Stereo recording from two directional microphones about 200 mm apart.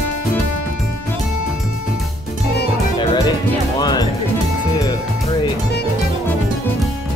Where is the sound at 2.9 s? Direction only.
20° left (ahead or behind).